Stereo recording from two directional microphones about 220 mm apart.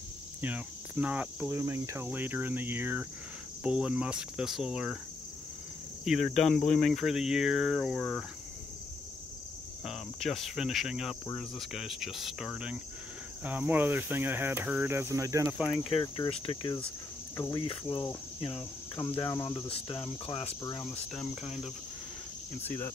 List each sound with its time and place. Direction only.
0.4 s cricket: 5° right (ahead or behind)
6.0 s cricket: centre (ahead or behind)
9.8 s cricket: centre (ahead or behind)
15.7 s cricket: 25° left (ahead or behind)
21.1 s cricket: centre (ahead or behind)